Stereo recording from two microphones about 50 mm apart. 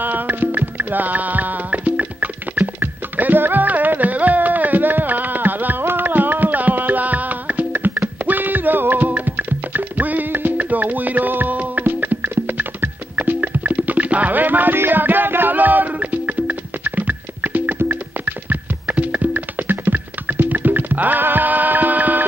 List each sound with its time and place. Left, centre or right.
0.0 s music: right